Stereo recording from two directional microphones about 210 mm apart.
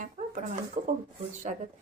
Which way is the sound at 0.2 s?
30° right (ahead or behind).